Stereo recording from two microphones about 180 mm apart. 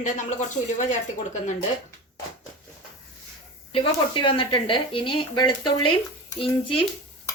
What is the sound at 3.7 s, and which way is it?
Speech, 30° left (ahead or behind).